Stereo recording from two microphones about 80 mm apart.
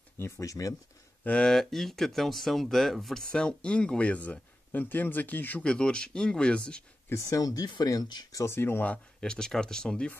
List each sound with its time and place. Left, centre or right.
0.2 s speech: left
1.2 s speech: centre
1.5 s speech: centre
7.1 s speech: left
8.4 s speech: left
9.2 s speech: centre